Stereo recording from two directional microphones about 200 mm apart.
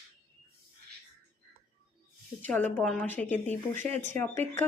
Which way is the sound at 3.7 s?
35° right (ahead or behind).